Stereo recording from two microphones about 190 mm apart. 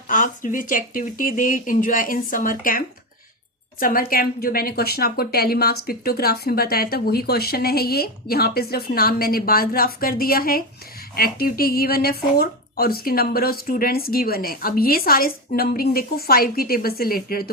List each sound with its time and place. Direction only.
0.1 s a woman's voice: 45° left (ahead or behind)